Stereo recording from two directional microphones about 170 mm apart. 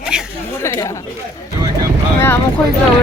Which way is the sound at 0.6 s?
15° left (ahead or behind).